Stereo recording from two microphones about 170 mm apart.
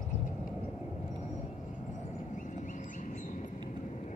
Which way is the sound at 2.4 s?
45° left (ahead or behind).